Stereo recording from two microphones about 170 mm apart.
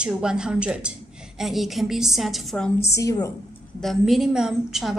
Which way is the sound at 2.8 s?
15° left (ahead or behind).